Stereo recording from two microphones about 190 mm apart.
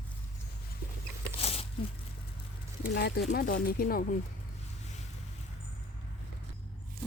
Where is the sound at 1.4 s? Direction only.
30° left (ahead or behind).